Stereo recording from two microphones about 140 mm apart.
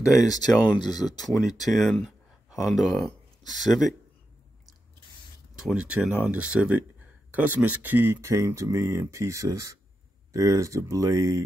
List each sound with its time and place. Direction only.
0.0 s speech: 30° left (ahead or behind)
1.1 s speech: centre (ahead or behind)
5.6 s speech: 5° right (ahead or behind); by 11.4 s 20° right (ahead or behind)